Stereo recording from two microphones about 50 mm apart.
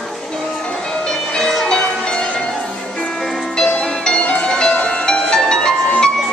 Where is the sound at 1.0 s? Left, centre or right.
Centre.